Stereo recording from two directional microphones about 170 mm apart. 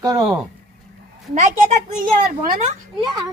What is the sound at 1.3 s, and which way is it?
Speech, 45° right (ahead or behind).